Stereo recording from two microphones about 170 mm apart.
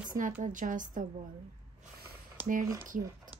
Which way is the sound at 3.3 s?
50° right (ahead or behind).